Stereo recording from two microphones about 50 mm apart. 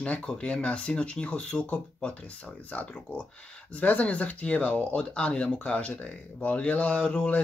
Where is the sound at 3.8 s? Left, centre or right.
Left.